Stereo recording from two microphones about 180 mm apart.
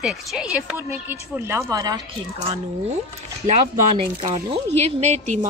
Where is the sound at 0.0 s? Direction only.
5° right (ahead or behind); by 2.0 s 20° right (ahead or behind).